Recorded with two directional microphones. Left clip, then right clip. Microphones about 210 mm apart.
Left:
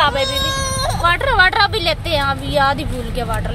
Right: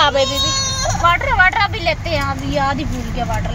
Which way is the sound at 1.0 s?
25° left (ahead or behind).